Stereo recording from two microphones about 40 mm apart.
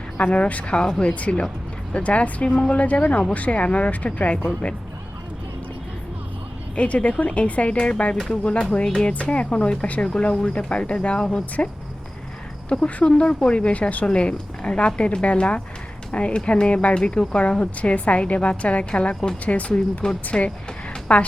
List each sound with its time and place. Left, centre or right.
0.2 s a woman's voice: left
0.8 s speech: centre
1.0 s a woman's voice: left
6.7 s a woman's voice: left
12.6 s speech: left
17.4 s a woman's voice: left
20.3 s speech: centre
21.1 s a woman's voice: left